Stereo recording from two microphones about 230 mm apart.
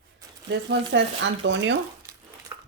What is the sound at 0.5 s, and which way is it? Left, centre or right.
Speech, right.